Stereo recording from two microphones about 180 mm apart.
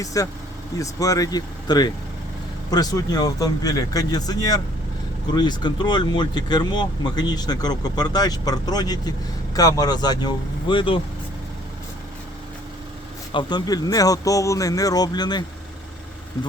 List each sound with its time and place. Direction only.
0.0 s speech: 20° left (ahead or behind)
13.3 s speech: 25° left (ahead or behind)